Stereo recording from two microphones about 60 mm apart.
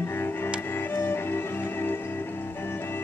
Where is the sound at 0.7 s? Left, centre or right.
Left.